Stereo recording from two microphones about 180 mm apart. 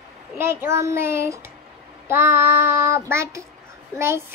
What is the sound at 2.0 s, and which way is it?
Child singing, 15° right (ahead or behind).